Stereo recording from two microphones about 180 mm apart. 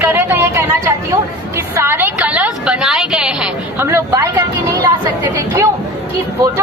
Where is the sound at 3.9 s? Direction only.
15° right (ahead or behind).